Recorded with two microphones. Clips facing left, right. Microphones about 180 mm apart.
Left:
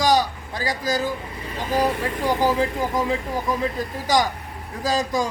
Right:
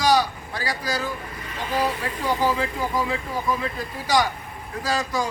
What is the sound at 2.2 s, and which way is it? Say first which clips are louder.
Speech: left 2 dB; 20° left (ahead or behind).